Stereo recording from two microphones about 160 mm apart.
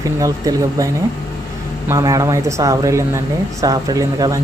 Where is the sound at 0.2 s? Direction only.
20° right (ahead or behind).